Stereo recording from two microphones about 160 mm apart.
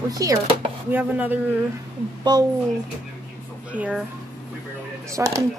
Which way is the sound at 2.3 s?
25° right (ahead or behind).